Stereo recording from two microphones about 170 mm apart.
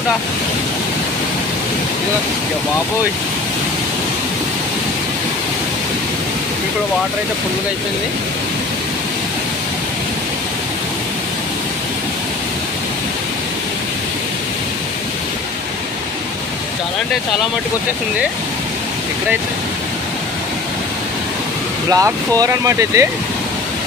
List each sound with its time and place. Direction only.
21.9 s speech: 20° right (ahead or behind)